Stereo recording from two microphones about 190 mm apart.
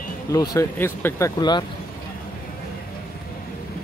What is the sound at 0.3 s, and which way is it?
Speech, 20° left (ahead or behind).